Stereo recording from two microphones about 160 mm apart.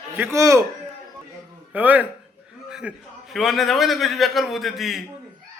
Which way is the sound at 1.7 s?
10° right (ahead or behind).